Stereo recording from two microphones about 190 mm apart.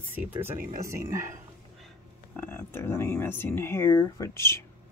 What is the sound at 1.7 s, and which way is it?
Pig, centre (ahead or behind).